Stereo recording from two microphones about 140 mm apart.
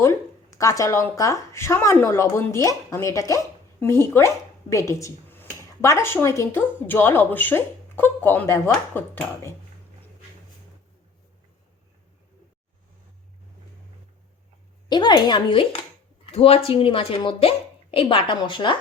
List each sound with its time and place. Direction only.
0.0 s a woman's voice: 20° left (ahead or behind)
14.8 s speech: 30° left (ahead or behind)